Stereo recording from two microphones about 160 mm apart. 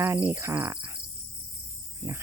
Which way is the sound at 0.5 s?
25° right (ahead or behind).